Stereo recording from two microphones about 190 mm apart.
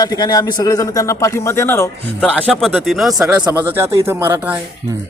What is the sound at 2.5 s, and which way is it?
Speech, centre (ahead or behind).